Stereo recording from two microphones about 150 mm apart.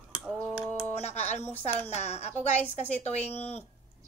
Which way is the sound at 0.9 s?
45° left (ahead or behind).